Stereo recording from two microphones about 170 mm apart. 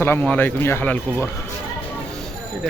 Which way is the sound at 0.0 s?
10° left (ahead or behind).